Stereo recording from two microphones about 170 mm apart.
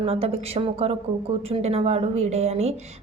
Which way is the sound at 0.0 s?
35° right (ahead or behind).